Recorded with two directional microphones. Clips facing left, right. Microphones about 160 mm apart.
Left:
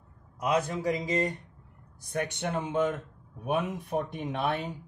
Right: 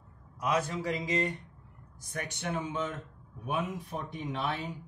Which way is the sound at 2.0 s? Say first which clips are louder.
Left 7 dB; 60° left (ahead or behind).